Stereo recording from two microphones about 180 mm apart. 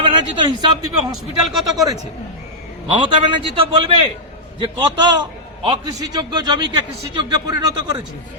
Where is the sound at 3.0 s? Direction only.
30° right (ahead or behind).